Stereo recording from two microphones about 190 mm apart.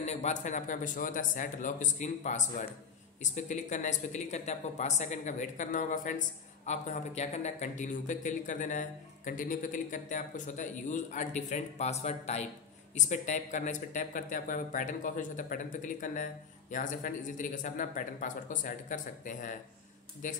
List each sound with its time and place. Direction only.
0.0 s a man's voice: 35° left (ahead or behind)